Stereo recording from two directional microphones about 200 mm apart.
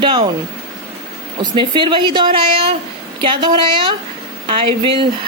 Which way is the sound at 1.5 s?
25° right (ahead or behind).